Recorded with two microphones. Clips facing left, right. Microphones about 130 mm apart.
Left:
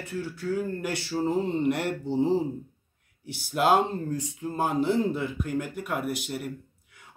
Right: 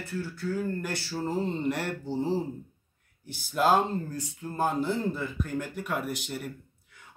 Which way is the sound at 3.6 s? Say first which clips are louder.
Left 1 dB; 15° left (ahead or behind).